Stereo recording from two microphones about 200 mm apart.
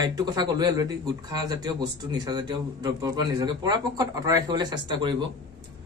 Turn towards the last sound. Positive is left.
turn(degrees=-20)  # may be behind; listen again after turning